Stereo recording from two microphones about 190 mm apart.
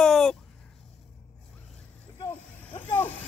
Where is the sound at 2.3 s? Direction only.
10° left (ahead or behind).